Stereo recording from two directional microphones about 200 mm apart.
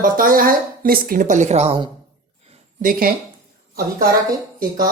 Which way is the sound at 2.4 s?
45° right (ahead or behind).